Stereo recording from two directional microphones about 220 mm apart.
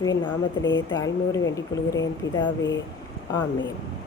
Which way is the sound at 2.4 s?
55° left (ahead or behind).